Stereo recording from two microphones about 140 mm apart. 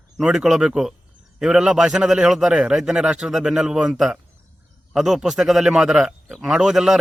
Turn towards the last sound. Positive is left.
turn(degrees=-5)  # may be behind; listen again after turning